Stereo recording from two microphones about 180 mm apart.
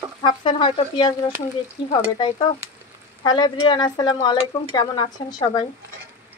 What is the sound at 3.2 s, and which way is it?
Speech, 25° left (ahead or behind).